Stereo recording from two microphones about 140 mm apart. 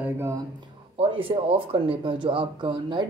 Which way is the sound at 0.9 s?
40° right (ahead or behind).